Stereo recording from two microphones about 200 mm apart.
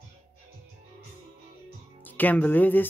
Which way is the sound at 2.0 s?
10° left (ahead or behind).